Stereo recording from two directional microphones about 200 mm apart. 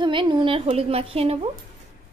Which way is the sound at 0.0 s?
25° right (ahead or behind).